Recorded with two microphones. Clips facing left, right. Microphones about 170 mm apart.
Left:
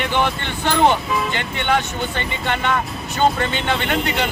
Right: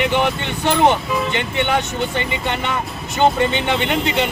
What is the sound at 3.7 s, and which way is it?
Speech, 20° right (ahead or behind).